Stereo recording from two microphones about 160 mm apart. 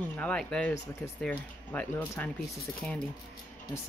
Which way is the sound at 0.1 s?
10° left (ahead or behind).